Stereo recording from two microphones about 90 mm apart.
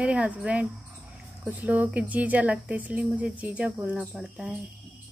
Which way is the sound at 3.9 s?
5° right (ahead or behind).